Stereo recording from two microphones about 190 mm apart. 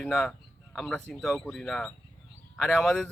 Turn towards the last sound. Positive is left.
turn(degrees=0)  # may be behind; listen again after turning